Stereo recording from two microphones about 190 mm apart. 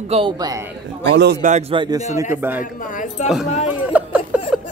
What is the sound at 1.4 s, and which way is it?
Speech, 35° right (ahead or behind).